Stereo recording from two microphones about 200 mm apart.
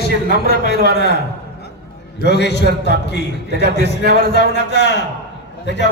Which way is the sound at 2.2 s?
60° left (ahead or behind).